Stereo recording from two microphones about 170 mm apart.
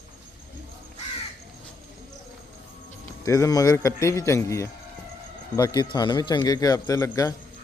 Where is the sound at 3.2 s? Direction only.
20° left (ahead or behind).